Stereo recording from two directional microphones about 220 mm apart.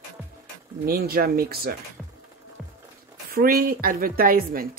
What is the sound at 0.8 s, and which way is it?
Speech, 45° right (ahead or behind).